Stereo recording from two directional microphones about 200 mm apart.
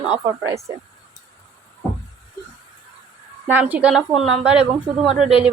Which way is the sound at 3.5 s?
10° right (ahead or behind).